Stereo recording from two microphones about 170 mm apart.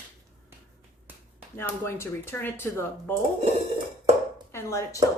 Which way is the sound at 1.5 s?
15° left (ahead or behind).